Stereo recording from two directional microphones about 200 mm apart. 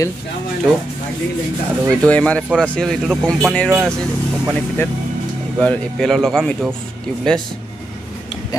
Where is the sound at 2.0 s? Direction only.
5° left (ahead or behind).